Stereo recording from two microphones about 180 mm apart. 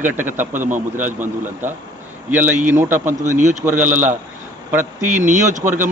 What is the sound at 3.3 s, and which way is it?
Speech, 45° right (ahead or behind).